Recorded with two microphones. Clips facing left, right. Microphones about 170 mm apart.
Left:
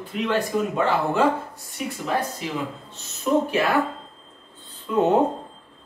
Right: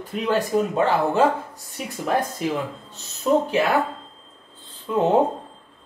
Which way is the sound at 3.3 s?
30° right (ahead or behind).